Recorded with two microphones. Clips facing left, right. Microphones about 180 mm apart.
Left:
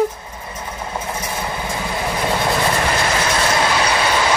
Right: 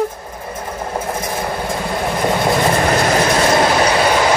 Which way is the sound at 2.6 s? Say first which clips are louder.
Right 4 dB; 40° right (ahead or behind).